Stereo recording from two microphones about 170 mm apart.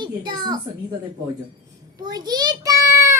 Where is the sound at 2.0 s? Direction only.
25° right (ahead or behind).